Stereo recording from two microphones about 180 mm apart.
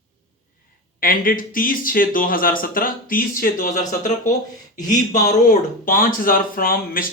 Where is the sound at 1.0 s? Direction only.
50° left (ahead or behind).